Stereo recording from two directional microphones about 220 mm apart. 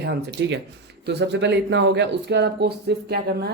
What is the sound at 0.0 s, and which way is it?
Speech, 50° right (ahead or behind).